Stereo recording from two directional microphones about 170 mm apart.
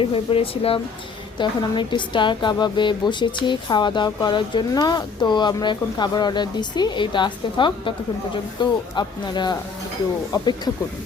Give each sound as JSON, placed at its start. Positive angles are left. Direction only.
{"t": 0.0, "sound": "a woman's voice", "side_deg": 30}